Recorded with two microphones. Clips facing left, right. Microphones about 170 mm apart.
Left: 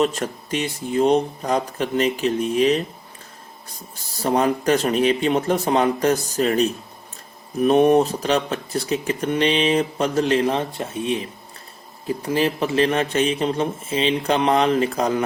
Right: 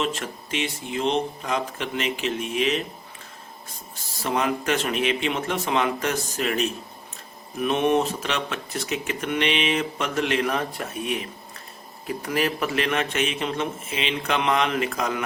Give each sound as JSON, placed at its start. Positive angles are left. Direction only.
{"t": 0.0, "sound": "speech", "side_deg": 40}
{"t": 4.1, "sound": "speech", "side_deg": 35}